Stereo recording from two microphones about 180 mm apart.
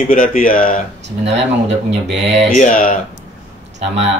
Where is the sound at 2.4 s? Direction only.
45° left (ahead or behind).